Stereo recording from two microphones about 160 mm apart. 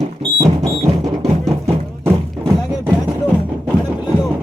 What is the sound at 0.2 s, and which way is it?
Music, 25° right (ahead or behind).